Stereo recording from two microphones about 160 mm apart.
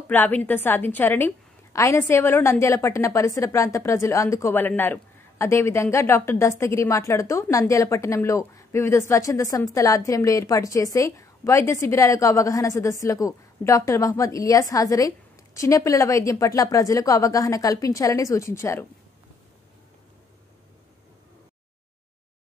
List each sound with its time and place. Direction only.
0.1 s a woman's voice: 10° left (ahead or behind)